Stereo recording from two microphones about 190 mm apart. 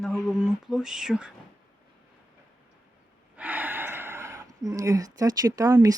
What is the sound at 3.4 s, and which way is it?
Gasp, 10° right (ahead or behind).